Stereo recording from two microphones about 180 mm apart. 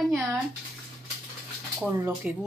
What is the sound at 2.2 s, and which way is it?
Speech, 5° right (ahead or behind).